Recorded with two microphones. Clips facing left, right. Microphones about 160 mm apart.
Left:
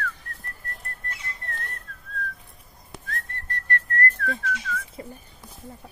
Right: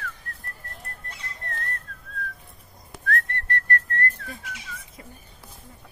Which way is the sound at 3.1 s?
75° right (ahead or behind).